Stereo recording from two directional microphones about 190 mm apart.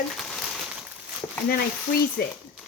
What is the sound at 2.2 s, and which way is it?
Speech, 55° left (ahead or behind).